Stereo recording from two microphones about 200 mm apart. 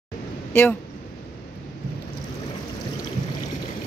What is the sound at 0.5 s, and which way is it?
Speech, 10° left (ahead or behind).